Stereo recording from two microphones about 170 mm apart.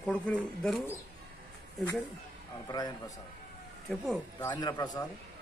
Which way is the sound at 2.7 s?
25° left (ahead or behind).